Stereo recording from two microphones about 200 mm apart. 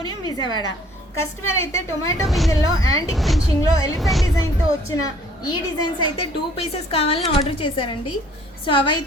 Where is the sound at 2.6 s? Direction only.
90° left.